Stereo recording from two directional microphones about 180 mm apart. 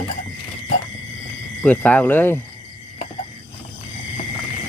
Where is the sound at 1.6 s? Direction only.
10° left (ahead or behind).